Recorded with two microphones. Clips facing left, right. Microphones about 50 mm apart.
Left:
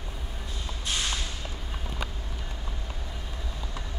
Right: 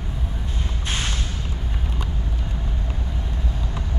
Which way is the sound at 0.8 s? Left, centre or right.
Right.